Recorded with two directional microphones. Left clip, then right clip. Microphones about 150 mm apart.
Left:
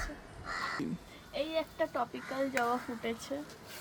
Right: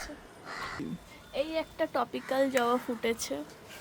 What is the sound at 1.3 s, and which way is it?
Speech, 60° right (ahead or behind).